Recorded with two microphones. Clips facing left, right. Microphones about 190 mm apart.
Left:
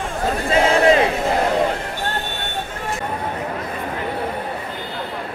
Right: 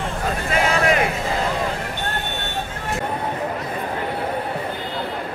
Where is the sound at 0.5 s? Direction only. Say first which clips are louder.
Left 5 dB; 25° left (ahead or behind).